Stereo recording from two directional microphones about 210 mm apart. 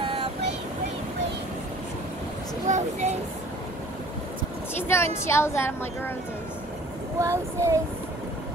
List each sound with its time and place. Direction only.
0.0 s vehicle: 25° right (ahead or behind)
2.7 s a sound: 35° right (ahead or behind)
4.8 s a woman's voice: 10° left (ahead or behind)
7.2 s speech: 15° right (ahead or behind)